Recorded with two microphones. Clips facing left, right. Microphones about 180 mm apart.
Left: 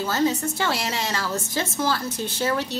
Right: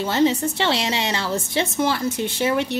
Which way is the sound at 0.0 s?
20° right (ahead or behind).